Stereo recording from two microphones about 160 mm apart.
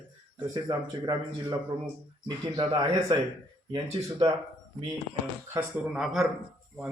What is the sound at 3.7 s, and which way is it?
Speech, 20° right (ahead or behind).